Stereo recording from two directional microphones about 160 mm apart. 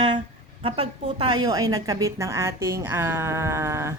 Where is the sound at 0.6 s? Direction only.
35° right (ahead or behind); by 3.9 s 15° right (ahead or behind).